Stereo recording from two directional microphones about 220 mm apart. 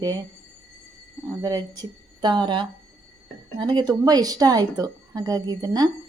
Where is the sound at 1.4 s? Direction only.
15° right (ahead or behind).